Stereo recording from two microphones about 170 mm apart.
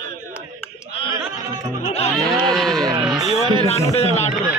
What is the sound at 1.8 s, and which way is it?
Music, 35° left (ahead or behind).